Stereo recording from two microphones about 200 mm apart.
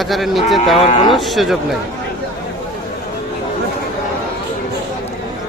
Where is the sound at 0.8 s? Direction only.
30° left (ahead or behind).